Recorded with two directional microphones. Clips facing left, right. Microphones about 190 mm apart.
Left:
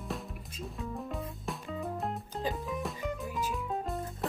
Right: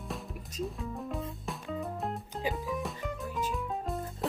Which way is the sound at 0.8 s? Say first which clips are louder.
Right 1 dB; centre (ahead or behind).